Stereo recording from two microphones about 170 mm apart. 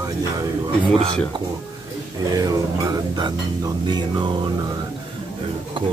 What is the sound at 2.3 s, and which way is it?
Speech, 20° right (ahead or behind).